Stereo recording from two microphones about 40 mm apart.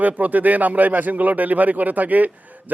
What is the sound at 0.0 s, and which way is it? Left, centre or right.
Speech, right.